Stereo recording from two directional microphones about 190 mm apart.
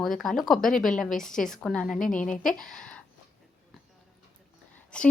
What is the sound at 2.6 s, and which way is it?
Speech, 5° left (ahead or behind).